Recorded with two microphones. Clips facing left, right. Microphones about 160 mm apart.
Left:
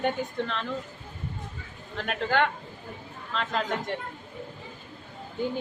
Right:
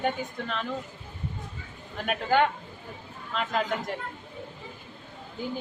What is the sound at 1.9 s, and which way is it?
Speech, 10° right (ahead or behind).